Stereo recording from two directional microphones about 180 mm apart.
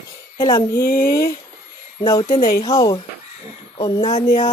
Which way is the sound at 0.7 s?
55° left (ahead or behind).